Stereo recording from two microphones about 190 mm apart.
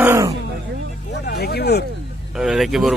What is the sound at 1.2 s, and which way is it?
Speech, 55° left (ahead or behind).